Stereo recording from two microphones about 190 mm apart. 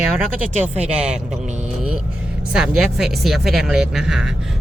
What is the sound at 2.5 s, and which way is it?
Speech, 5° right (ahead or behind).